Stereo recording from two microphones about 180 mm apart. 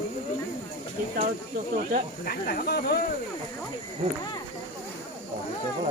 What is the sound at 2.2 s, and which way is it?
Speech, 60° left (ahead or behind).